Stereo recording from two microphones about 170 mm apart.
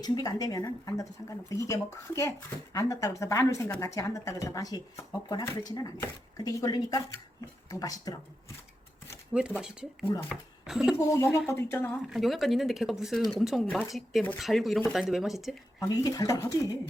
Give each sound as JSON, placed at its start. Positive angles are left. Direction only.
{"t": 0.0, "sound": "speech", "side_deg": 25}
{"t": 9.6, "sound": "speech", "side_deg": -5}
{"t": 11.1, "sound": "speech", "side_deg": 15}
{"t": 12.0, "sound": "speech", "side_deg": 0}
{"t": 15.8, "sound": "speech", "side_deg": 20}